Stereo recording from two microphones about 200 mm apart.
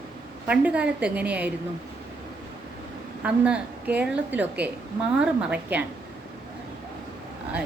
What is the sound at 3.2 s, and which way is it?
A woman's voice, 5° right (ahead or behind).